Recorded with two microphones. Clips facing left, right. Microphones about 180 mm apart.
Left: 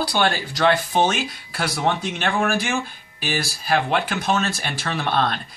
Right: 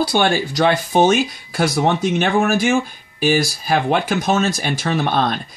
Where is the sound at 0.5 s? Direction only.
45° right (ahead or behind).